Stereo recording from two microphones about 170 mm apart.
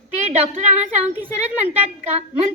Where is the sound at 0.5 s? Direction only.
45° right (ahead or behind).